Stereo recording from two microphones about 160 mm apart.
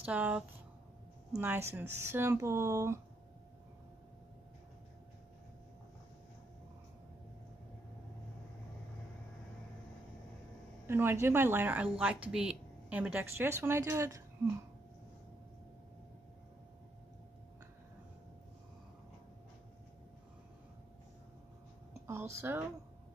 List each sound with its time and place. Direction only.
0.0 s a woman's voice: 10° right (ahead or behind)
10.9 s a woman's voice: 15° right (ahead or behind)
22.0 s speech: 15° right (ahead or behind)